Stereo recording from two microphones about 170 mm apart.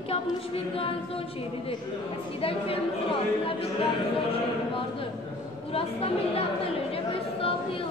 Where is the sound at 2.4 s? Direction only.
35° left (ahead or behind).